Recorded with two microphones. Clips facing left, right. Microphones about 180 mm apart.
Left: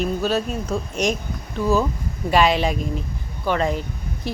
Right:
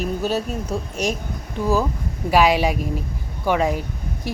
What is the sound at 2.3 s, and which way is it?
Speech, 10° right (ahead or behind).